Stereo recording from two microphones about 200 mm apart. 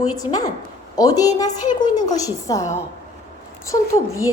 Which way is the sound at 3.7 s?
15° left (ahead or behind).